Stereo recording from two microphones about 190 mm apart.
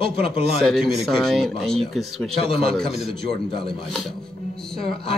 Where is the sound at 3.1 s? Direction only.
55° right (ahead or behind).